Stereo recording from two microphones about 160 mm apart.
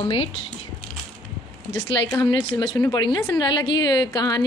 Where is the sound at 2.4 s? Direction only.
25° left (ahead or behind).